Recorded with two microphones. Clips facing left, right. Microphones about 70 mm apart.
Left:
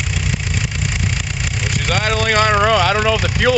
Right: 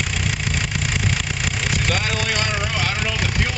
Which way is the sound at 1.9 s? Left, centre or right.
Left.